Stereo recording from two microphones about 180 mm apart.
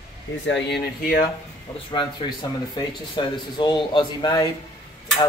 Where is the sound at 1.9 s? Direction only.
25° left (ahead or behind).